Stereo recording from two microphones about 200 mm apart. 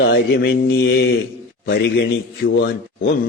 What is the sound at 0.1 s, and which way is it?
Mantra, 60° left (ahead or behind).